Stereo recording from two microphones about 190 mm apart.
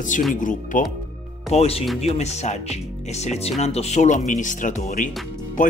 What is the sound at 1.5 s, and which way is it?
Speech, 30° left (ahead or behind).